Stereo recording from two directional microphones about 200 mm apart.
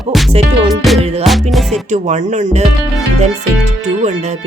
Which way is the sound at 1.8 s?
35° right (ahead or behind).